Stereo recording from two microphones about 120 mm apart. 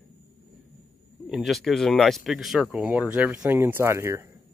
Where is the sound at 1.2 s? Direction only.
Centre (ahead or behind); by 4.3 s 20° right (ahead or behind).